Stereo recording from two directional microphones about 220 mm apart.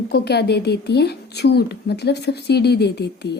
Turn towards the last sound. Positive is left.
turn(degrees=50)  # may be behind; listen again after turning